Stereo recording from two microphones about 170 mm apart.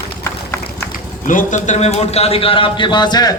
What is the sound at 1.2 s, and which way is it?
A man's voice, 50° left (ahead or behind).